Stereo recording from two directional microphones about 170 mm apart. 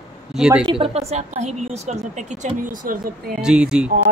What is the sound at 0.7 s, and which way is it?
A woman's voice, 35° right (ahead or behind).